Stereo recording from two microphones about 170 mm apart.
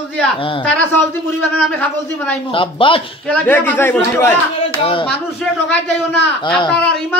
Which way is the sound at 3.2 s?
10° left (ahead or behind).